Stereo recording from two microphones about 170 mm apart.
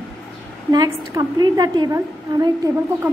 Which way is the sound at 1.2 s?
25° right (ahead or behind).